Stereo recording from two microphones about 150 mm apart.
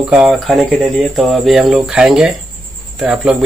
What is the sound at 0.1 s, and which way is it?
Speech, centre (ahead or behind).